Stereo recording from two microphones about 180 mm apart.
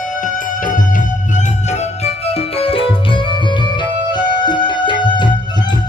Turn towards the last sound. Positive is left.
turn(degrees=25)  # may be behind; listen again after turning